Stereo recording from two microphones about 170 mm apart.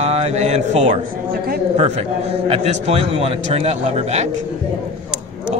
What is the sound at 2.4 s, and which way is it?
A man's voice, 35° right (ahead or behind).